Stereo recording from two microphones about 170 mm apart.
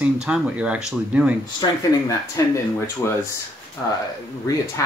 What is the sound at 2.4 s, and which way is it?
Speech, 20° left (ahead or behind).